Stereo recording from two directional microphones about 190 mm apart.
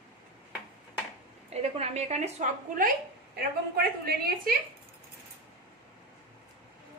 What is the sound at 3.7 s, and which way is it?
Speech, 55° right (ahead or behind).